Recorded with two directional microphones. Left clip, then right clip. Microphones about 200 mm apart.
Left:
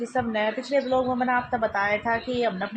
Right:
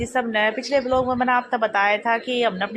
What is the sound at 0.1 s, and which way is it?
A woman's voice, 20° right (ahead or behind).